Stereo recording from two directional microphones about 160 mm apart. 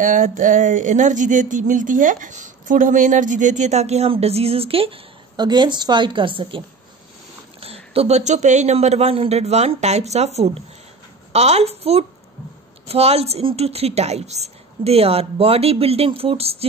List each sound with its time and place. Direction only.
0.0 s speech: 55° right (ahead or behind); by 6.6 s 35° right (ahead or behind)
7.6 s a woman's voice: 40° right (ahead or behind)